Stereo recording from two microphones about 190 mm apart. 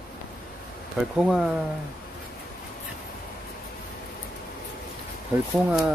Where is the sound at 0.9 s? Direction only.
5° right (ahead or behind).